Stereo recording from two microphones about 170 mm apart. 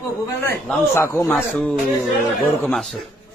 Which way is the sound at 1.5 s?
5° left (ahead or behind).